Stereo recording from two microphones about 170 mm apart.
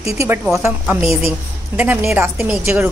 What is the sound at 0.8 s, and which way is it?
A woman's voice, centre (ahead or behind).